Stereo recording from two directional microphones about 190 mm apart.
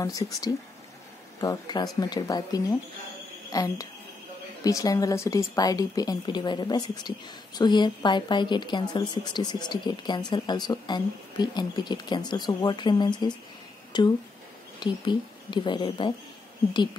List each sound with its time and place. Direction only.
0.0 s speech: 20° left (ahead or behind)